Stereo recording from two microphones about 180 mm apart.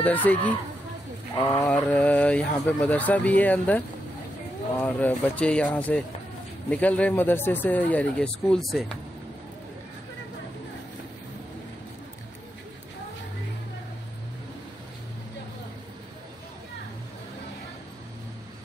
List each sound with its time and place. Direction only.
0.0 s speech: 10° left (ahead or behind)
1.4 s a sound: 20° left (ahead or behind)
1.7 s speech: 10° left (ahead or behind)